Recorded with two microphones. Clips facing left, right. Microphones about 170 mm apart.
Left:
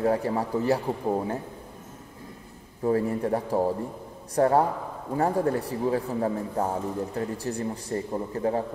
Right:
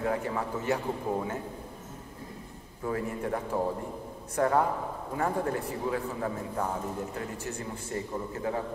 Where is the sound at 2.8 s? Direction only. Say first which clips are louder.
Left 7 dB; 35° left (ahead or behind).